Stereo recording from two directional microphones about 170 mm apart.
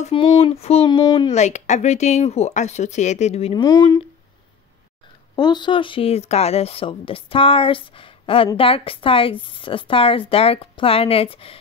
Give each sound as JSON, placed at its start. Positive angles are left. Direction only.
{"t": 0.0, "sound": "speech", "side_deg": 30}
{"t": 1.3, "sound": "speech", "side_deg": 45}
{"t": 3.6, "sound": "speech", "side_deg": 20}
{"t": 5.3, "sound": "speech", "side_deg": 25}